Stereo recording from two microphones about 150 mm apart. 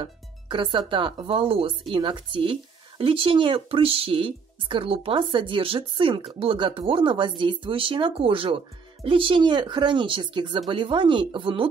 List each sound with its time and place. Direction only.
0.0 s speech: 35° right (ahead or behind)